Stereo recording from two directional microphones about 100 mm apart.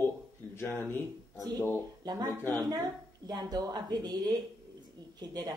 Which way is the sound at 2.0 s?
45° right (ahead or behind).